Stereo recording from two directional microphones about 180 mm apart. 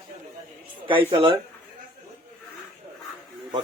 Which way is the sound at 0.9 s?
30° right (ahead or behind).